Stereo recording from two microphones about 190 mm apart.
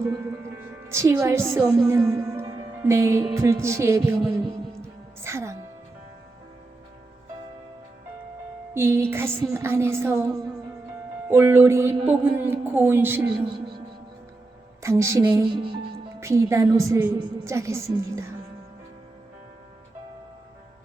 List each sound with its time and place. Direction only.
0.0 s music: 15° right (ahead or behind)
2.0 s speech: 15° right (ahead or behind)
5.2 s music: 15° right (ahead or behind)
8.7 s a woman's voice: 10° right (ahead or behind)
13.5 s a woman's voice: 25° right (ahead or behind)